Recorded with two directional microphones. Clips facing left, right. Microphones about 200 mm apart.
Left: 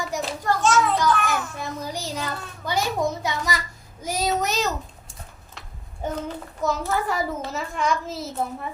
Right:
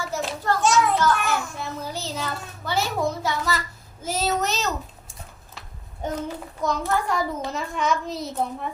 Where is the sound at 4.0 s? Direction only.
10° left (ahead or behind).